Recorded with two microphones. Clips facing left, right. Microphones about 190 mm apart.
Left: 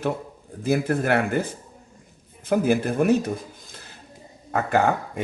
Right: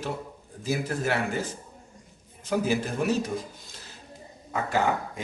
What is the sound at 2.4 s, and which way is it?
Speech, 55° left (ahead or behind).